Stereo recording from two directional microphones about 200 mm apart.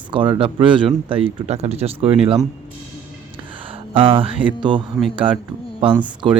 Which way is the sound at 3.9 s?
25° right (ahead or behind).